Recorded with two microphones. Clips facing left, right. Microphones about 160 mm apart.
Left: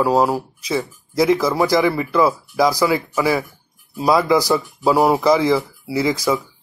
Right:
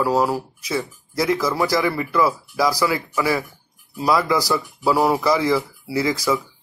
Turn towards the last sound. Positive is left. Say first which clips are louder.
# left 2 dB
turn(degrees=20)  # may be behind; listen again after turning